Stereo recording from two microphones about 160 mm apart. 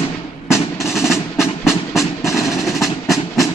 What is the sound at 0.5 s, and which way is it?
Music, centre (ahead or behind).